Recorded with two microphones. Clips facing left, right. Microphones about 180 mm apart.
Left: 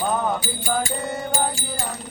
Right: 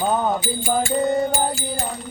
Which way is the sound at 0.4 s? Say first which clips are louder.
Right 3 dB; 40° left (ahead or behind).